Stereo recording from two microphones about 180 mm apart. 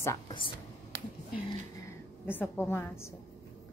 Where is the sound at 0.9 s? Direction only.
90° right.